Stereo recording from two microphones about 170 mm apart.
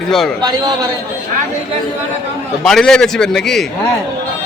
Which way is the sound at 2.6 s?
5° left (ahead or behind).